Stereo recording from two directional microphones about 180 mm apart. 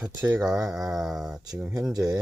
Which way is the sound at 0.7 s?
Centre (ahead or behind).